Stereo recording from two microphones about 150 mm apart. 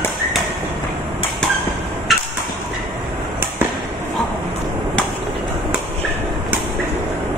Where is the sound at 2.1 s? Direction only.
Centre (ahead or behind).